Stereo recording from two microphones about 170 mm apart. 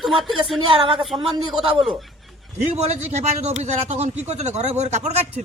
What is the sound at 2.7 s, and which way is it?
Speech, 40° right (ahead or behind).